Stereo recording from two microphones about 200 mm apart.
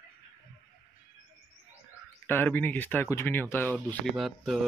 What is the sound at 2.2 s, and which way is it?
Speech, 10° left (ahead or behind).